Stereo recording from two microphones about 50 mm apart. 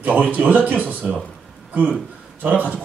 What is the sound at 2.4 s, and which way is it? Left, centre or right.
Speech, right.